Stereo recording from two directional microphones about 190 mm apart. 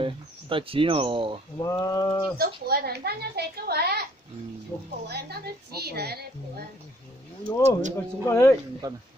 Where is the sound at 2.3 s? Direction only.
55° right (ahead or behind).